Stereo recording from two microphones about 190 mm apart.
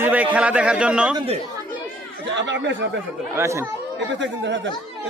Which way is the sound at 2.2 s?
70° right (ahead or behind).